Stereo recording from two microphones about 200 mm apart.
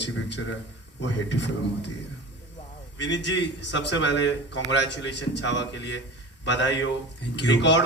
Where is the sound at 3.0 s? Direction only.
60° left (ahead or behind).